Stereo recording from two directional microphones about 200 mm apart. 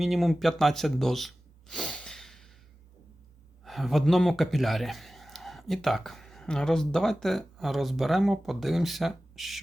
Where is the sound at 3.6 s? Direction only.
Centre (ahead or behind).